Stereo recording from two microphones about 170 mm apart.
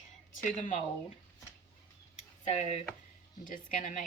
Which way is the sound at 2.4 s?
45° left (ahead or behind).